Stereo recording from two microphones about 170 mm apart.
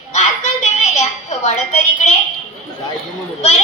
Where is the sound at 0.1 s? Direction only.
45° left (ahead or behind).